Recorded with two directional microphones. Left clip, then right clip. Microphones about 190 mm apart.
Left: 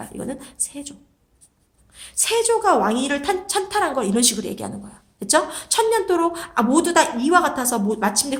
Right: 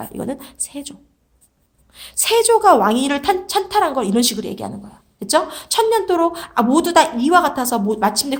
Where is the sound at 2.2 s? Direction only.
40° right (ahead or behind).